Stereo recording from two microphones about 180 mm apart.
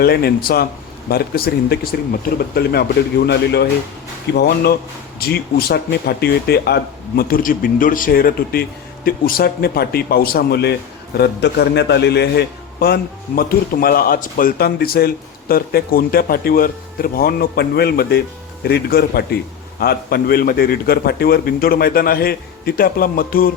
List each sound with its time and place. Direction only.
0.0 s a man's voice: 60° left (ahead or behind)